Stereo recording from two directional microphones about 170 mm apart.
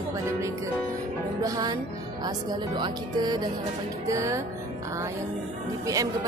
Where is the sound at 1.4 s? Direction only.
20° right (ahead or behind).